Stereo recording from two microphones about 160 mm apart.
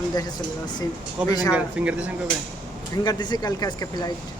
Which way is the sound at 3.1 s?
25° left (ahead or behind).